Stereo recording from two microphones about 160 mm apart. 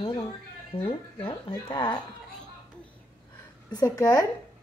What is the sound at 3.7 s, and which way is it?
Speech, 25° left (ahead or behind).